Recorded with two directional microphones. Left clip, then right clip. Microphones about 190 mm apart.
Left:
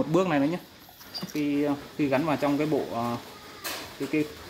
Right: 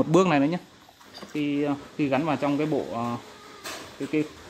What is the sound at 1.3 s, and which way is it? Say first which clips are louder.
Speech: right 1 dB; 40° right (ahead or behind).